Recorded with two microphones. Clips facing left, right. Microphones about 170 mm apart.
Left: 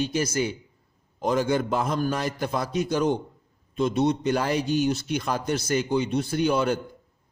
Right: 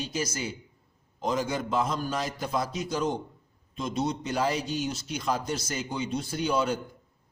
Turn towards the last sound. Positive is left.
turn(degrees=60)  # may be behind; listen again after turning